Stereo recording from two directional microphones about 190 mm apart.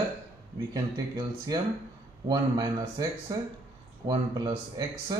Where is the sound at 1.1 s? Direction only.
20° right (ahead or behind).